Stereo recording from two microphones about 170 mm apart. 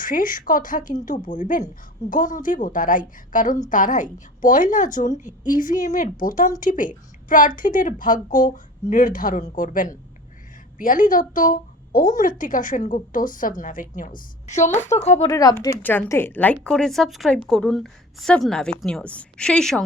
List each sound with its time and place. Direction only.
0.0 s a woman's voice: 55° left (ahead or behind)
15.3 s a woman's voice: 20° left (ahead or behind); by 19.8 s 5° left (ahead or behind)